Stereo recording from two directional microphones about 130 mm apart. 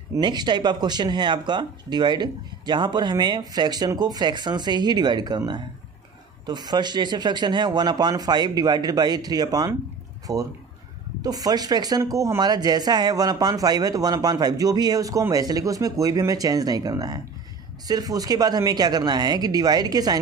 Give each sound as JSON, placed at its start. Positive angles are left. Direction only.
{"t": 0.1, "sound": "speech", "side_deg": -35}